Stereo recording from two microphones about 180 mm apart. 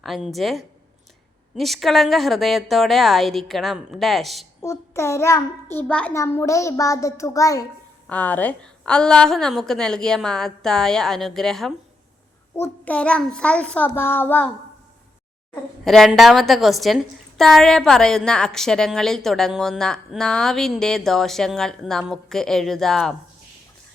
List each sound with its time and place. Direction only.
0.0 s a woman's voice: centre (ahead or behind)
4.6 s a child's voice: 15° left (ahead or behind)
8.0 s a woman's voice: 10° left (ahead or behind)
15.8 s a woman's voice: centre (ahead or behind)